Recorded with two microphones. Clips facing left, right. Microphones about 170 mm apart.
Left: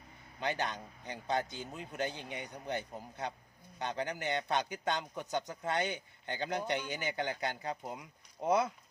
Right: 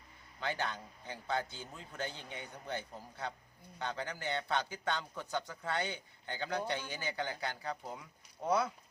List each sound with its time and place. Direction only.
0.3 s a man's voice: 20° left (ahead or behind)